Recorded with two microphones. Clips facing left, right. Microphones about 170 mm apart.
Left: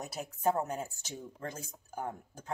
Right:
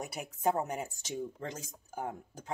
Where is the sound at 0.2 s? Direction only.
10° right (ahead or behind).